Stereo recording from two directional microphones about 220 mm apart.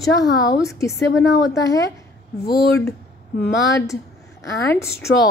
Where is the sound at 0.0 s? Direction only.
15° left (ahead or behind).